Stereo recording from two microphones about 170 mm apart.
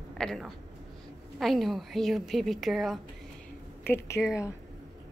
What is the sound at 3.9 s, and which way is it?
Speech, 15° left (ahead or behind).